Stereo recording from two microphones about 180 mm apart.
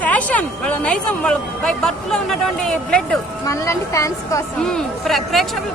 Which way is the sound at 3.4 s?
15° left (ahead or behind).